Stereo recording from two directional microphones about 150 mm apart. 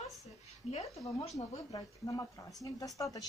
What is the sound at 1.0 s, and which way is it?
Speech, 25° left (ahead or behind).